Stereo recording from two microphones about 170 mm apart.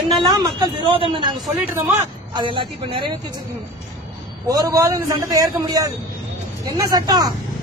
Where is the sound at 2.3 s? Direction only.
30° right (ahead or behind).